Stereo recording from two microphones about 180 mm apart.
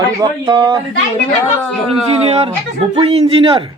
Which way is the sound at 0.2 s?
25° right (ahead or behind).